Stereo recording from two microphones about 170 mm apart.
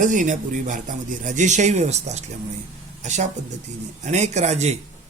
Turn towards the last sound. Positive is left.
turn(degrees=-40)  # may be behind; listen again after turning